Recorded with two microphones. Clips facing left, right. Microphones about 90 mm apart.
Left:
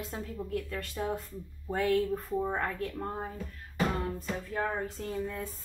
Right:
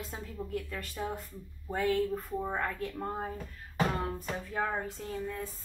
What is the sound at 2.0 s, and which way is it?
Speech, 10° left (ahead or behind).